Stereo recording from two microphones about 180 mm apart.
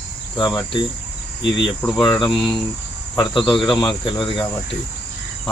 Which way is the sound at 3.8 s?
25° left (ahead or behind).